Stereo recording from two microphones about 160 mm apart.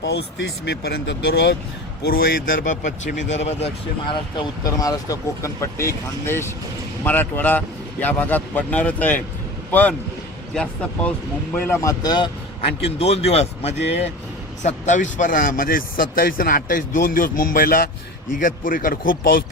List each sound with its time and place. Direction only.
0.0 s speech: 90° left
2.0 s speech: 75° left (ahead or behind); by 3.7 s 45° left (ahead or behind)
4.4 s speech: 20° left (ahead or behind)
10.5 s speech: 5° left (ahead or behind)
11.5 s speech: 15° left (ahead or behind)
13.0 s speech: 40° left (ahead or behind); by 19.5 s 65° left (ahead or behind)